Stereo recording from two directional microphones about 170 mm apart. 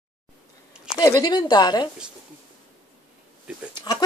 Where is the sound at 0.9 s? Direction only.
25° left (ahead or behind).